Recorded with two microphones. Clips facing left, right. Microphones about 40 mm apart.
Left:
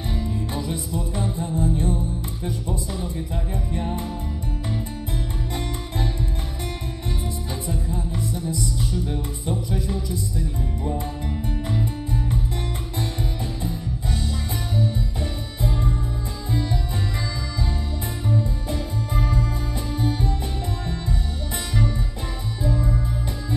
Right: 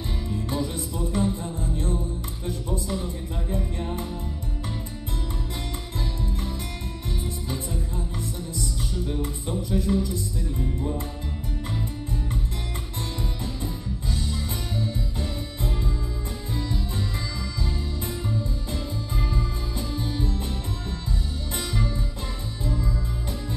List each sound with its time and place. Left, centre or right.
1.6 s music: left
9.0 s music: left
14.9 s music: left
18.3 s music: left
19.9 s music: left
22.6 s music: left